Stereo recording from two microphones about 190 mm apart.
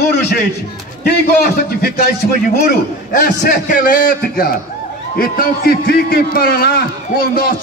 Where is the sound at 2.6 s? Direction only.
45° left (ahead or behind).